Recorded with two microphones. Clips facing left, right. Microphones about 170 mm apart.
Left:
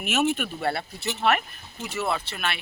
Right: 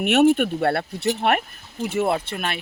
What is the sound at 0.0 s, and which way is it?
Speech, 65° right (ahead or behind).